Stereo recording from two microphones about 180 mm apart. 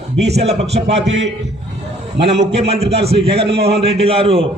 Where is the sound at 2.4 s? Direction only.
35° right (ahead or behind).